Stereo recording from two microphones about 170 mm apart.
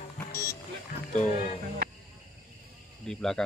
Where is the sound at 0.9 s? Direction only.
45° left (ahead or behind).